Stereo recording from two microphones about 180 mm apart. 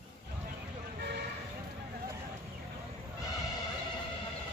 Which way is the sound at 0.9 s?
65° right (ahead or behind).